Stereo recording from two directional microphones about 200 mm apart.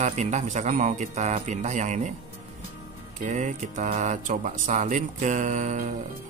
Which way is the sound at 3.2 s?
35° right (ahead or behind).